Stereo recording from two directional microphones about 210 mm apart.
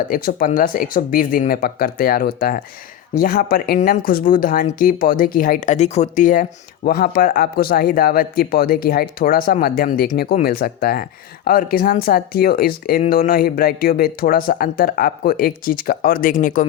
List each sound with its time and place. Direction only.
0.1 s speech: 40° left (ahead or behind)